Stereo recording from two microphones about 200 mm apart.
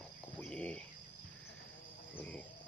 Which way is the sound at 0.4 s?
5° left (ahead or behind).